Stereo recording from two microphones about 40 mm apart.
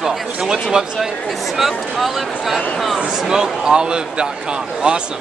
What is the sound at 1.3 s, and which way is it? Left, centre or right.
Speech, centre.